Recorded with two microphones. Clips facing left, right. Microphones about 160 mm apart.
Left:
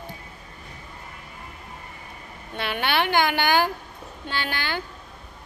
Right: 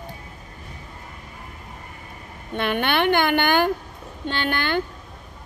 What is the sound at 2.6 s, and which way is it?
Speech, 55° right (ahead or behind).